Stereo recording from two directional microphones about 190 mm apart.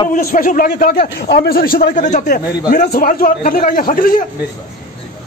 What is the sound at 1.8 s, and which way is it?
A man's voice, 40° left (ahead or behind).